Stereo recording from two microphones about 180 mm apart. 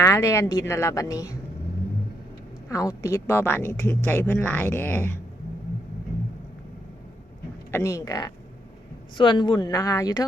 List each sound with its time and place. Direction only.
0.0 s a woman's voice: 15° left (ahead or behind)
2.6 s a woman's voice: 20° left (ahead or behind)
7.7 s speech: 15° left (ahead or behind)